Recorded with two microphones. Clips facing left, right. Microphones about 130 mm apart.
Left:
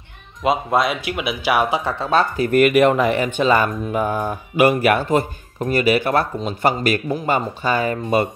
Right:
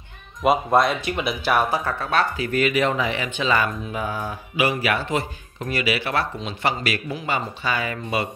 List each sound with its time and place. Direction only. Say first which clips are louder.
0.4 s speech: even; centre (ahead or behind)
1.7 s speech: left 4 dB; 25° left (ahead or behind)
2.3 s speech: left 7 dB; 50° left (ahead or behind)